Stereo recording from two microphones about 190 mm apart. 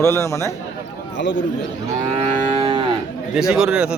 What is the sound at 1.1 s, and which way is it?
Speech, 70° left (ahead or behind).